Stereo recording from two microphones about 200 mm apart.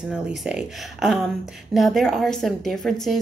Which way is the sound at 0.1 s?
Centre (ahead or behind).